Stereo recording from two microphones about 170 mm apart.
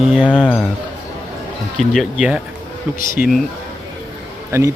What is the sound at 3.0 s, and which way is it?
Speech, 60° left (ahead or behind).